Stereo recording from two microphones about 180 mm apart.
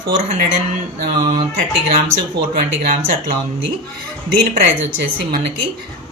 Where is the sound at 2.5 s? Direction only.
55° right (ahead or behind).